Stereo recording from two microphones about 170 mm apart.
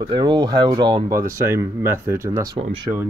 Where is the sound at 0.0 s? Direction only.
25° right (ahead or behind).